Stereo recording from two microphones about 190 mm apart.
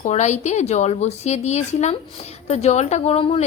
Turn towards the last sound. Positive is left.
turn(degrees=30)  # may be behind; listen again after turning